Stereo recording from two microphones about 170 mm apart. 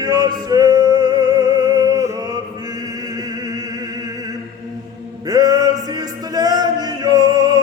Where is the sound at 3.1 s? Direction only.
20° right (ahead or behind).